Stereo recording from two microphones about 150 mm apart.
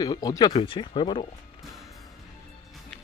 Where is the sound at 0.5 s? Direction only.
35° left (ahead or behind).